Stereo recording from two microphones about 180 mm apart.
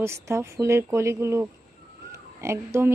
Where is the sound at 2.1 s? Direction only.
15° right (ahead or behind).